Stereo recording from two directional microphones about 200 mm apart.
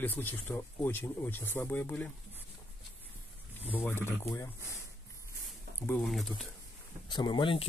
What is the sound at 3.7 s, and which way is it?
Speech, 10° left (ahead or behind).